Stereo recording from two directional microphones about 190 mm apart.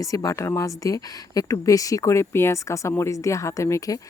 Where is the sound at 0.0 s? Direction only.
15° left (ahead or behind).